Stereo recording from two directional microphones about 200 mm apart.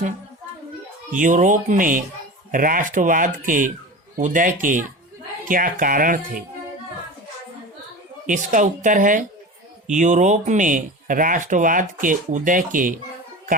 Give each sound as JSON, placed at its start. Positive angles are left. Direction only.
{"t": 1.1, "sound": "speech", "side_deg": -40}
{"t": 8.3, "sound": "speech", "side_deg": -40}